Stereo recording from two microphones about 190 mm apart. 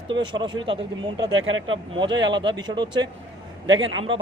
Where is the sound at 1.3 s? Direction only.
90° right.